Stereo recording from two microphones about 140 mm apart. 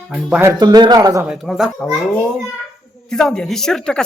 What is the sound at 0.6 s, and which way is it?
Speech, 30° right (ahead or behind).